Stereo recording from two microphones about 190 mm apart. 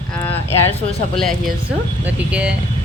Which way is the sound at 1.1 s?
5° left (ahead or behind).